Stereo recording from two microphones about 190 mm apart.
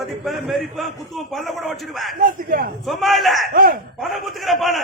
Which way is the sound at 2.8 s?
Centre (ahead or behind).